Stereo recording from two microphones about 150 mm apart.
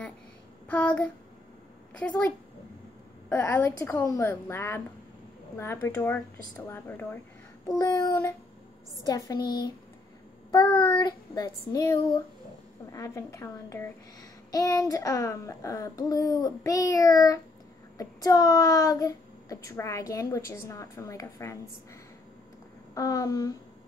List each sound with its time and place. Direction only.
0.7 s a woman's voice: 10° left (ahead or behind)
3.3 s a woman's voice: 15° left (ahead or behind); by 9.7 s 30° left (ahead or behind)
10.5 s child singing: 35° left (ahead or behind)
12.9 s a child's voice: 20° left (ahead or behind)
22.9 s a child's voice: 25° left (ahead or behind)